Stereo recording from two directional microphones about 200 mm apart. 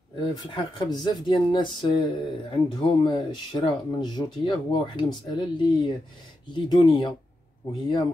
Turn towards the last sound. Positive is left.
turn(degrees=20)  # may be behind; listen again after turning